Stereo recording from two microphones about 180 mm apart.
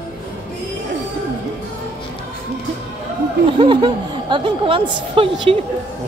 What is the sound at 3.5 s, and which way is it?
A woman's voice, 25° right (ahead or behind).